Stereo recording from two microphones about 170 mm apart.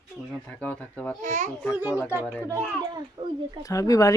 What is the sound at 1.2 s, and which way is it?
Speech, 45° right (ahead or behind).